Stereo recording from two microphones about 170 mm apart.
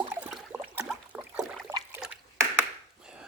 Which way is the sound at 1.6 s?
15° right (ahead or behind).